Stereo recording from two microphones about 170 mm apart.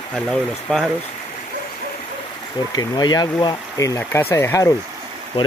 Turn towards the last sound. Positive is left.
turn(degrees=30)  # may be behind; listen again after turning